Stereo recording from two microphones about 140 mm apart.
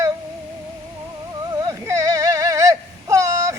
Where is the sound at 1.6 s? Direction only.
25° right (ahead or behind).